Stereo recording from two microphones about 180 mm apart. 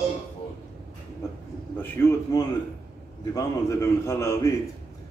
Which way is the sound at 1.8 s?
15° left (ahead or behind).